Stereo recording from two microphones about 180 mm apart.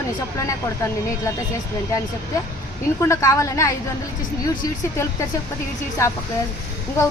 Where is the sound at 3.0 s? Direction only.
15° left (ahead or behind).